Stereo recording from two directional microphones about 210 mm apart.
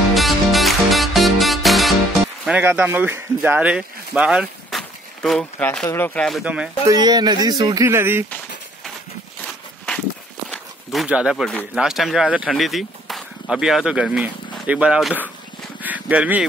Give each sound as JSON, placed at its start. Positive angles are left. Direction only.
{"t": 0.1, "sound": "music", "side_deg": 0}
{"t": 2.4, "sound": "speech", "side_deg": -5}
{"t": 6.9, "sound": "speech", "side_deg": -20}
{"t": 10.5, "sound": "speech", "side_deg": 0}
{"t": 15.8, "sound": "a sound", "side_deg": -5}